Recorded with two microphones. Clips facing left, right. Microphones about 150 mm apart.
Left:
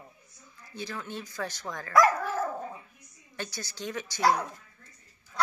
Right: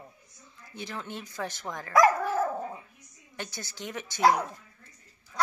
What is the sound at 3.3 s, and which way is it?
A woman's voice, 20° right (ahead or behind).